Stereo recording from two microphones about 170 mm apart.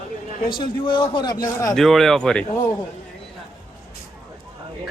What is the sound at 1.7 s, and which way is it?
Speech, centre (ahead or behind).